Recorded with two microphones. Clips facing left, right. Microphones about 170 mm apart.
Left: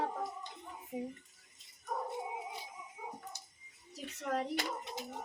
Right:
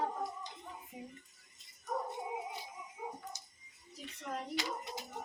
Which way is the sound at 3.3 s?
60° left (ahead or behind).